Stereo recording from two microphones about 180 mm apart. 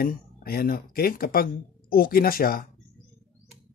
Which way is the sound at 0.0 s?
55° left (ahead or behind).